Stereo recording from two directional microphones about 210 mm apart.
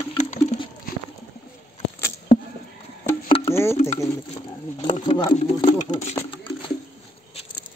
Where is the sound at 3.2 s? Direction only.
25° left (ahead or behind).